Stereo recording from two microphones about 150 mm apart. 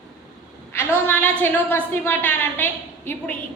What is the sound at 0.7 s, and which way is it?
A woman's voice, 15° left (ahead or behind).